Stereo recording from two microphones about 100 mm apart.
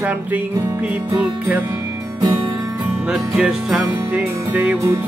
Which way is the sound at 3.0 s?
5° right (ahead or behind).